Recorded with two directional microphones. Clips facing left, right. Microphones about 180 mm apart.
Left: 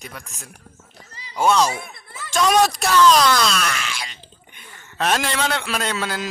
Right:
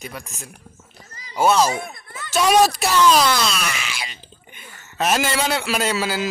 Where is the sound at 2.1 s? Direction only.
Centre (ahead or behind).